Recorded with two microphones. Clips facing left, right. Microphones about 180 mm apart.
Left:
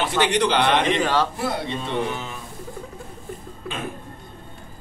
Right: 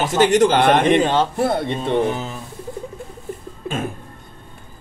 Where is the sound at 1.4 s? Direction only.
55° right (ahead or behind); by 2.4 s 40° right (ahead or behind).